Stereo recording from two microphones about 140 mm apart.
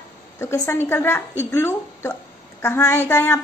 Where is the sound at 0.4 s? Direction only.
20° left (ahead or behind).